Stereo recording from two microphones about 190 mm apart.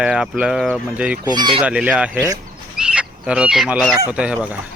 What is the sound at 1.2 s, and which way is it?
Speech, 20° right (ahead or behind).